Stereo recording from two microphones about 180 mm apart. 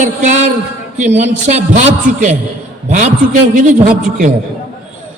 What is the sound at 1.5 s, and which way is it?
A man's voice, 40° right (ahead or behind).